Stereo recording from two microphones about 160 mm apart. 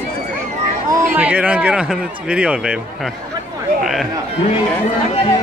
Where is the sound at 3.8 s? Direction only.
Centre (ahead or behind).